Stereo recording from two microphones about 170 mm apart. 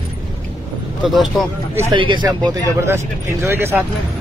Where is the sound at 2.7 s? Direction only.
15° right (ahead or behind).